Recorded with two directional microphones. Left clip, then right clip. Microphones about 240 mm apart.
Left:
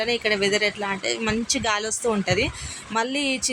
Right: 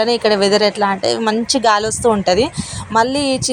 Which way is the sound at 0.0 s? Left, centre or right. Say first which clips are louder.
Right 8 dB; right.